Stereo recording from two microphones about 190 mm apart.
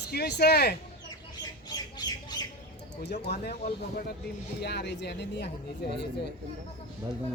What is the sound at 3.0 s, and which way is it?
Speech, 65° left (ahead or behind).